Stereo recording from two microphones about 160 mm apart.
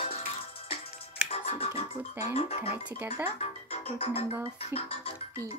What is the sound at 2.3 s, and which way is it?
Music, 40° left (ahead or behind).